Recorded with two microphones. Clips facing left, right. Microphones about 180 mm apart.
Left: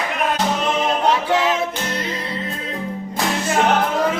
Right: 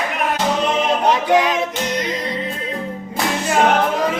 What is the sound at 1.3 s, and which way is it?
Music, 15° right (ahead or behind).